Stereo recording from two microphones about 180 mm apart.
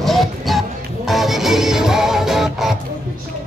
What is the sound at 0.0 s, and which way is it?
Music, centre (ahead or behind).